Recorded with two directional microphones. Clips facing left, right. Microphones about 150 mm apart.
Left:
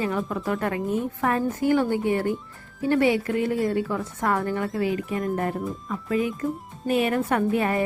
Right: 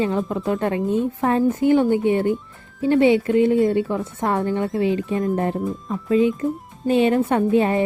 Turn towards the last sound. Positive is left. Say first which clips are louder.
# right 5 dB
turn(degrees=-25)  # may be behind; listen again after turning